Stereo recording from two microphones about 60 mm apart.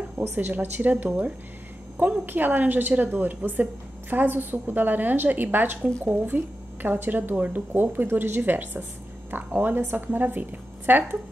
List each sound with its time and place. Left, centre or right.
0.3 s a woman's voice: right